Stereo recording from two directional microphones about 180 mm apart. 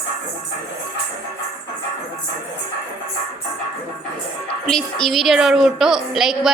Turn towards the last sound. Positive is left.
turn(degrees=0)  # may be behind; listen again after turning